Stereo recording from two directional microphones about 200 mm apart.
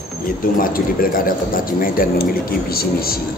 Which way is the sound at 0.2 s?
45° left (ahead or behind).